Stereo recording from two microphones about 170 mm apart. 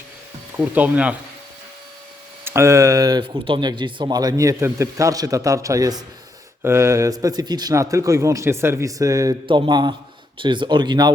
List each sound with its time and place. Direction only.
0.5 s speech: 10° right (ahead or behind)
2.4 s speech: 15° right (ahead or behind)